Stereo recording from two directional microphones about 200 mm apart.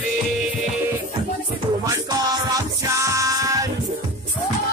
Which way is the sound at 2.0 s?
15° right (ahead or behind).